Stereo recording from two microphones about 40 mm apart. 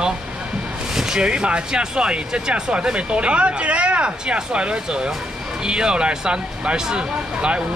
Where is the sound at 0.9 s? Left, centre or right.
Centre.